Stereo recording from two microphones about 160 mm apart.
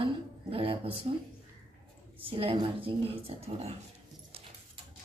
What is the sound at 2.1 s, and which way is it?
Speech, 35° right (ahead or behind).